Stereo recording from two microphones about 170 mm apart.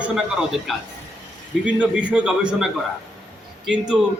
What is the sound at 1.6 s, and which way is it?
A man's voice, 5° right (ahead or behind).